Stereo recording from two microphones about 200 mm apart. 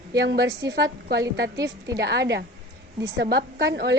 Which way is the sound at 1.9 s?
55° right (ahead or behind).